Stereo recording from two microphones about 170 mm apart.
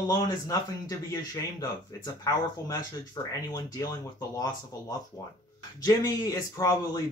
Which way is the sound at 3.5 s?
20° left (ahead or behind).